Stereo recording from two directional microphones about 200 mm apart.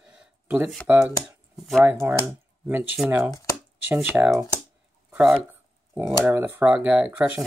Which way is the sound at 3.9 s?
10° right (ahead or behind).